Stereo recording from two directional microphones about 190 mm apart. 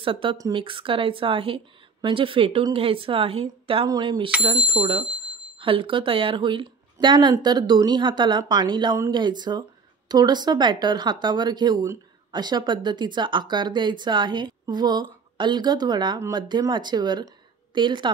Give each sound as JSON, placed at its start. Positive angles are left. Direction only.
{"t": 0.0, "sound": "a woman's voice", "side_deg": -25}